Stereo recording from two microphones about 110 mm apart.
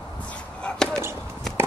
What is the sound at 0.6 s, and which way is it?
Chop, 5° left (ahead or behind).